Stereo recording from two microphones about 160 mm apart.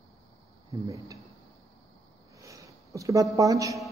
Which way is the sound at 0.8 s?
20° right (ahead or behind).